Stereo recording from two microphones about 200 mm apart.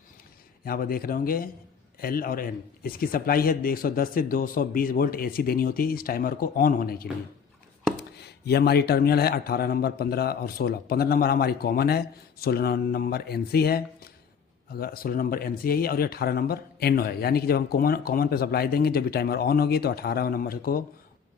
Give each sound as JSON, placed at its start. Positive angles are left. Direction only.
{"t": 0.6, "sound": "speech", "side_deg": 50}